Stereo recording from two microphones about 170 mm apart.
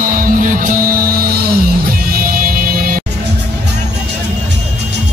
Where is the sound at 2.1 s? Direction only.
55° right (ahead or behind).